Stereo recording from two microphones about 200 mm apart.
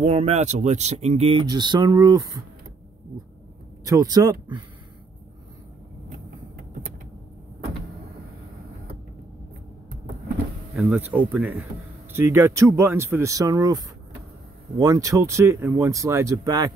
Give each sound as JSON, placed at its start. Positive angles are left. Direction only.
{"t": 0.0, "sound": "speech", "side_deg": -30}
{"t": 3.8, "sound": "speech", "side_deg": -15}
{"t": 10.7, "sound": "speech", "side_deg": -5}